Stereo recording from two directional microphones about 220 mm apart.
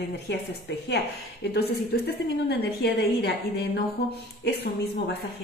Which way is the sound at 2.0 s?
45° left (ahead or behind).